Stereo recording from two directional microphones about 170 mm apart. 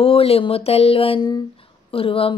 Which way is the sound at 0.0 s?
35° left (ahead or behind).